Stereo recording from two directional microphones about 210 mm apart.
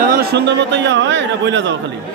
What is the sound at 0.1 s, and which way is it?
A man's voice, 50° right (ahead or behind).